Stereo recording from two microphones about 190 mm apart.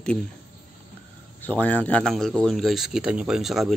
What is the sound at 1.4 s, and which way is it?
Speech, 5° left (ahead or behind).